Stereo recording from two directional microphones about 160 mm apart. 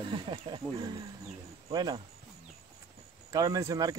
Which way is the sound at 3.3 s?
20° right (ahead or behind).